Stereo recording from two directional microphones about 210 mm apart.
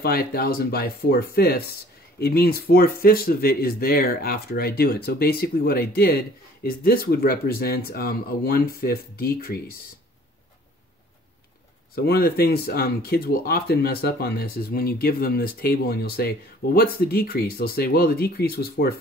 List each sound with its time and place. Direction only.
0.0 s speech: 45° left (ahead or behind)
11.9 s speech: 45° left (ahead or behind)